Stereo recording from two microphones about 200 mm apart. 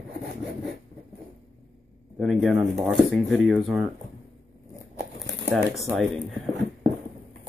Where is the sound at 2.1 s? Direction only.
Centre (ahead or behind).